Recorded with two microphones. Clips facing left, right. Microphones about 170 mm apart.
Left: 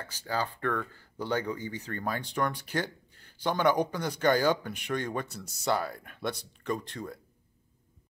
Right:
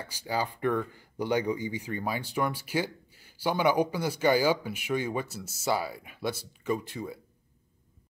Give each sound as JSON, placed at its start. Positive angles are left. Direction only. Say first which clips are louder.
{"t": 0.0, "sound": "speech", "louder": "right 1 dB", "side_deg": -10}